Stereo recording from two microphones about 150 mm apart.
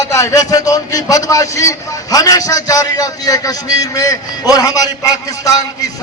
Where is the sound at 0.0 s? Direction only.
20° left (ahead or behind).